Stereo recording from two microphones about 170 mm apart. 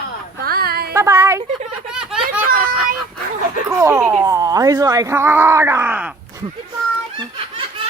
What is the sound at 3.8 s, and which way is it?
Speech, 15° right (ahead or behind).